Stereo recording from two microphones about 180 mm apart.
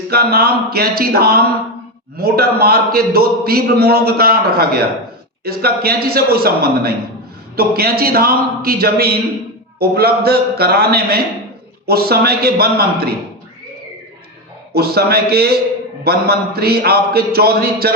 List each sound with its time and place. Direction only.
0.1 s a man's voice: 60° right (ahead or behind)
14.7 s a man's voice: 60° right (ahead or behind)